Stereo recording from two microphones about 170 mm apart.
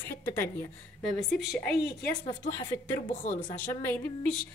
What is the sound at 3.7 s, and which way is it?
Speech, 15° left (ahead or behind).